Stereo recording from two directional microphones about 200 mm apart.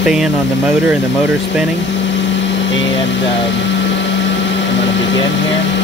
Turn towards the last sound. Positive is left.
turn(degrees=65)  # may be behind; listen again after turning